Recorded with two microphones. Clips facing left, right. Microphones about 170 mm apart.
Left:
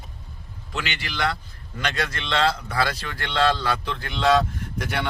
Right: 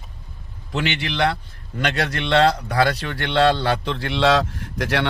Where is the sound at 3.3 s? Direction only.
65° right (ahead or behind); by 5.1 s 85° right.